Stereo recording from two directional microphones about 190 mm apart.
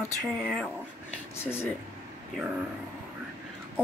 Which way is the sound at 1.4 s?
10° left (ahead or behind).